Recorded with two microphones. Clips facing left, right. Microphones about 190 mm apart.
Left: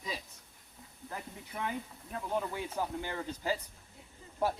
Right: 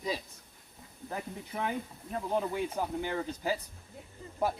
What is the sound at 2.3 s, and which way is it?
Speech, 15° right (ahead or behind).